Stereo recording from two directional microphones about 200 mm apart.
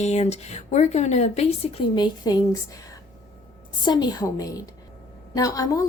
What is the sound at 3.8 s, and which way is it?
A woman's voice, 20° left (ahead or behind).